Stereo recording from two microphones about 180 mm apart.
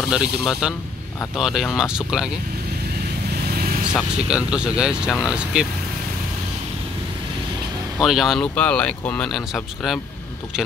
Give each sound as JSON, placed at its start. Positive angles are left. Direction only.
{"t": 0.1, "sound": "speech", "side_deg": -5}
{"t": 3.4, "sound": "vehicle", "side_deg": -55}
{"t": 3.9, "sound": "speech", "side_deg": -5}
{"t": 8.0, "sound": "speech", "side_deg": 0}